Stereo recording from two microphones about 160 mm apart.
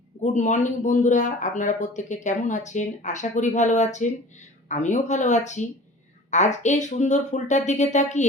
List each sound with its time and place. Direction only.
0.2 s speech: 50° left (ahead or behind)